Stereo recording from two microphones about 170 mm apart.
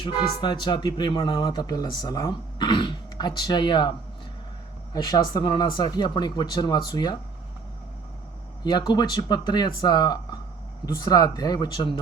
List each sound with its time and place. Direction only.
0.4 s speech: 25° left (ahead or behind)
4.9 s speech: 25° left (ahead or behind)
8.6 s speech: 25° left (ahead or behind)